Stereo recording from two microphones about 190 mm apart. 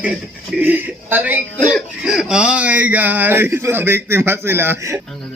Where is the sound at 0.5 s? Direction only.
10° right (ahead or behind).